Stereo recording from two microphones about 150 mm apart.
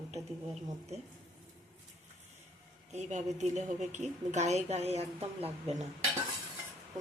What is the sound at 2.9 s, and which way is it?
A woman's voice, 50° right (ahead or behind).